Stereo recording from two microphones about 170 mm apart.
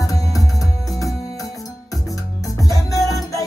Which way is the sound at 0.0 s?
20° left (ahead or behind).